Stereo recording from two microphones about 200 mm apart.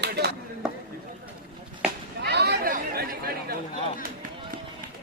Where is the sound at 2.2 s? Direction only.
55° right (ahead or behind).